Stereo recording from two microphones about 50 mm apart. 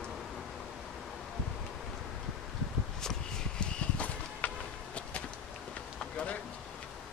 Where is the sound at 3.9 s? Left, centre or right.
Left.